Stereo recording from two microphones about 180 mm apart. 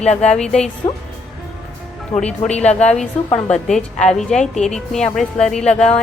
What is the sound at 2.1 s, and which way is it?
Speech, 40° left (ahead or behind).